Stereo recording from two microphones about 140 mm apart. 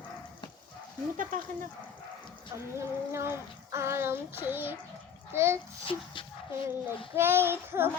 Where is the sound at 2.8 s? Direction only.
20° right (ahead or behind).